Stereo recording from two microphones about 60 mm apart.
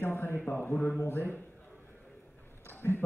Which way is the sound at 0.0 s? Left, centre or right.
Left.